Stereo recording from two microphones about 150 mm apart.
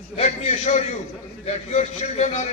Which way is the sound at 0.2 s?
45° left (ahead or behind).